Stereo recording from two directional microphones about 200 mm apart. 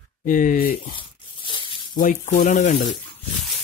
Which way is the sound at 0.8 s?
25° left (ahead or behind).